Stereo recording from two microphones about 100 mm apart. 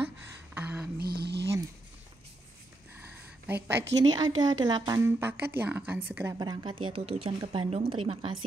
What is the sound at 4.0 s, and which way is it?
A woman's voice, 45° right (ahead or behind).